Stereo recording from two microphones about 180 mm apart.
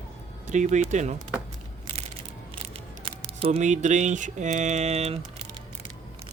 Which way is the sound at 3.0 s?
30° right (ahead or behind).